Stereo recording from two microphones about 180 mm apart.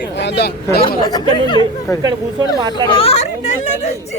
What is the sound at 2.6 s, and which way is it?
Speech, 25° right (ahead or behind).